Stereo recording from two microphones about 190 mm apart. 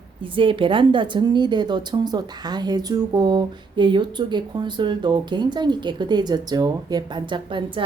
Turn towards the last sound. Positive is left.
turn(degrees=-25)  # may be behind; listen again after turning